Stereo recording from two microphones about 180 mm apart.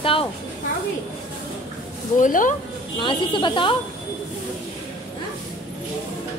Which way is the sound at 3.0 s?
25° left (ahead or behind).